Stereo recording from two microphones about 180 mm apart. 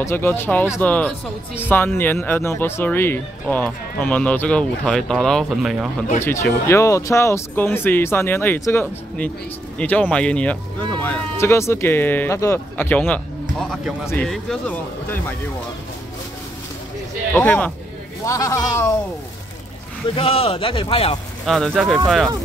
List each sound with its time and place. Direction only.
0.0 s speech: 15° left (ahead or behind)
6.2 s speech: 15° left (ahead or behind)
17.4 s speech: 10° left (ahead or behind)
20.2 s speech: 30° left (ahead or behind)
21.5 s speech: 5° left (ahead or behind)